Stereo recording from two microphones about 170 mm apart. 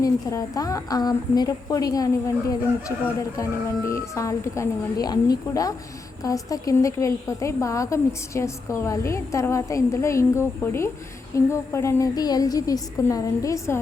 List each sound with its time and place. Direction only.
0.0 s a woman's voice: 20° left (ahead or behind)